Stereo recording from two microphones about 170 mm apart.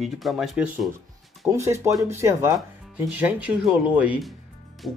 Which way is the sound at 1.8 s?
15° right (ahead or behind).